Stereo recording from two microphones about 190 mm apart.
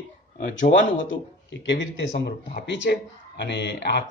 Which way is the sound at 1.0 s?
75° left (ahead or behind).